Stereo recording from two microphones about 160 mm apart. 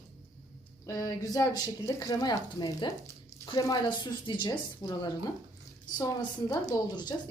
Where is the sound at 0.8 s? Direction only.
20° left (ahead or behind).